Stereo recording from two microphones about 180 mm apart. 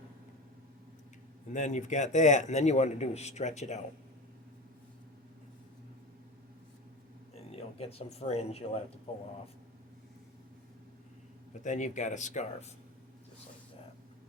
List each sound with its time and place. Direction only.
1.5 s speech: 40° left (ahead or behind)
7.3 s speech: 35° left (ahead or behind)
11.6 s speech: 40° left (ahead or behind)